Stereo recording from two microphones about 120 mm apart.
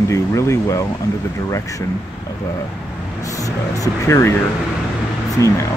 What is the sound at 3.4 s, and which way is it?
Speech, 30° left (ahead or behind).